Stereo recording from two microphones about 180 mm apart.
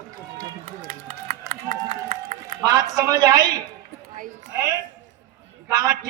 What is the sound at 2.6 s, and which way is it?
A man's voice, 20° right (ahead or behind).